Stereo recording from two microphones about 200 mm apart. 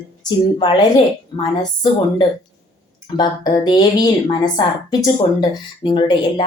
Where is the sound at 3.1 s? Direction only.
20° left (ahead or behind).